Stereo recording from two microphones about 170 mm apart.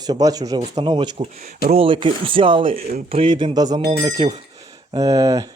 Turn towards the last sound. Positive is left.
turn(degrees=-20)  # may be behind; listen again after turning